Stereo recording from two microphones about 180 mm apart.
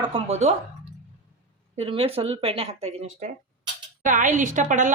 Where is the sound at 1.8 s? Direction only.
35° right (ahead or behind).